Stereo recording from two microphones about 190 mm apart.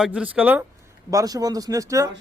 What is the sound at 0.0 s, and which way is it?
Speech, 5° right (ahead or behind).